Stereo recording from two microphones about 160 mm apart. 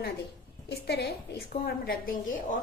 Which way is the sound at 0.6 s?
90° left.